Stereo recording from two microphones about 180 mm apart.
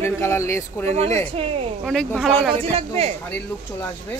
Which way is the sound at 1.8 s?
Centre (ahead or behind).